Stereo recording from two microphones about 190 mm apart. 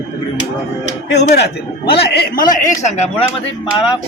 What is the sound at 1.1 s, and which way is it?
A man's voice, 60° left (ahead or behind).